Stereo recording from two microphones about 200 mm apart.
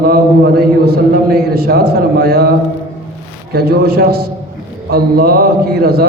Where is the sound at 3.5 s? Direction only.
50° right (ahead or behind).